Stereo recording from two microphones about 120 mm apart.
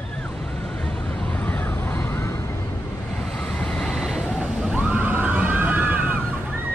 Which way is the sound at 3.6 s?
5° left (ahead or behind).